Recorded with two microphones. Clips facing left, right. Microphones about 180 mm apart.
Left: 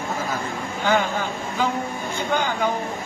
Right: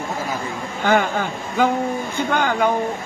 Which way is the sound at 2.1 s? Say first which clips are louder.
Right 2 dB; 55° right (ahead or behind).